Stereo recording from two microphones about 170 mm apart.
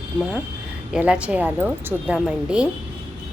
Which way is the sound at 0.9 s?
5° right (ahead or behind).